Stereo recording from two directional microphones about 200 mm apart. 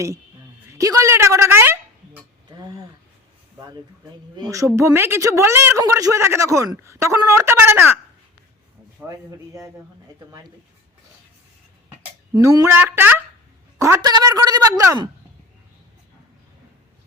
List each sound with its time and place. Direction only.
0.8 s a sound: 15° right (ahead or behind)
4.4 s speech: 15° right (ahead or behind)
9.0 s speech: 15° right (ahead or behind)
12.3 s speech: 20° right (ahead or behind)